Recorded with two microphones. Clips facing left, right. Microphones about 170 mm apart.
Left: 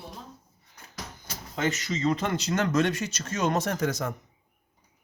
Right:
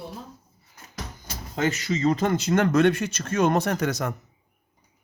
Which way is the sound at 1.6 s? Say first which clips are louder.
Right 4 dB; 40° right (ahead or behind).